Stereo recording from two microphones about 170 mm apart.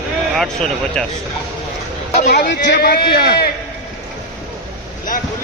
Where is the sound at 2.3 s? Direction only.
85° left.